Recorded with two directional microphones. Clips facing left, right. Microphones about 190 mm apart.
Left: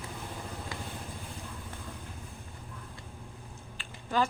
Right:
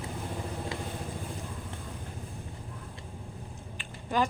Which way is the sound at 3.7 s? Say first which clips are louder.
Right 1 dB; 15° right (ahead or behind).